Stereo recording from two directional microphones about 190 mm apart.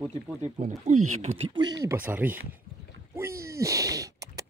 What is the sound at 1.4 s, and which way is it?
Speech, 25° right (ahead or behind).